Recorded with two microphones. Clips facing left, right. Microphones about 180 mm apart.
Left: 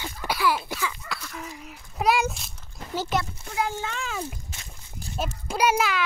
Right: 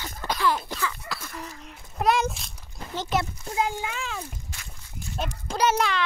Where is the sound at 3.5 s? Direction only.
20° right (ahead or behind).